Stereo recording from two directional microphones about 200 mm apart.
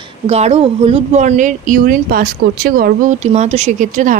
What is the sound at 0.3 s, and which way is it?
Speech, 30° right (ahead or behind).